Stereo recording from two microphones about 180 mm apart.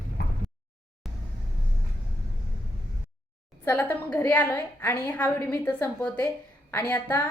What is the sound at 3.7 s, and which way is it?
A woman's voice, 10° left (ahead or behind).